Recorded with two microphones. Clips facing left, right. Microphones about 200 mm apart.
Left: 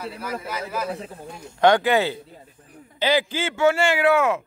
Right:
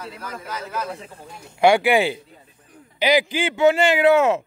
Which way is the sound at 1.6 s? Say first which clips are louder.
Right 1 dB; 10° right (ahead or behind).